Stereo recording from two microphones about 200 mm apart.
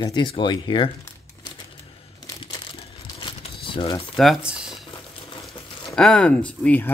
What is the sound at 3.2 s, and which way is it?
Crumpling, 25° left (ahead or behind).